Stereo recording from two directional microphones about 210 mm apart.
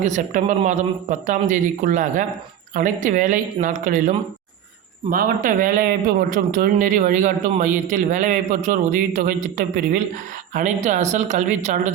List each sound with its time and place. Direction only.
0.0 s a man's voice: 35° right (ahead or behind)